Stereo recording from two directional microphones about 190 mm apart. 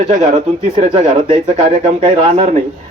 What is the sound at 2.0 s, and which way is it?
Speech, 35° right (ahead or behind).